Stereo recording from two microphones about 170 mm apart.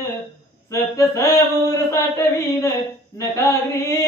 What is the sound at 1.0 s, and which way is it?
Singing, 15° left (ahead or behind).